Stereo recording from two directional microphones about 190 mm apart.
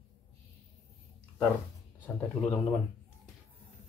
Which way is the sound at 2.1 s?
5° left (ahead or behind).